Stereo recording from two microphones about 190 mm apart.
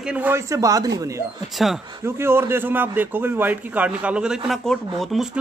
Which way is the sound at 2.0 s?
15° right (ahead or behind).